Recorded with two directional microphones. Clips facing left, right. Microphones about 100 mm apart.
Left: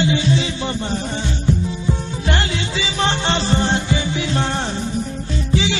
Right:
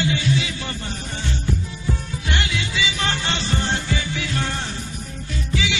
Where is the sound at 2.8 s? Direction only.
30° left (ahead or behind).